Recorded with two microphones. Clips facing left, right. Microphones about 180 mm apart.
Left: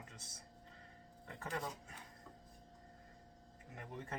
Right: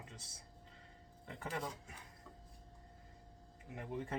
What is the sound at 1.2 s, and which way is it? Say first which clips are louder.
Speech: right 1 dB; 5° right (ahead or behind).